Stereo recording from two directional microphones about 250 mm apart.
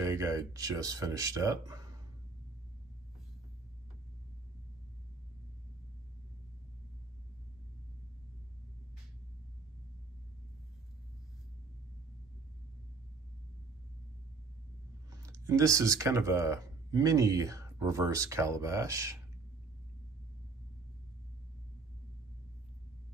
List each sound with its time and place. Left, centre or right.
0.0 s speech: centre
15.0 s speech: centre